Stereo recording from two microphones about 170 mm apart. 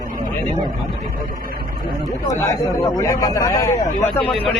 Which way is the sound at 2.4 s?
20° left (ahead or behind).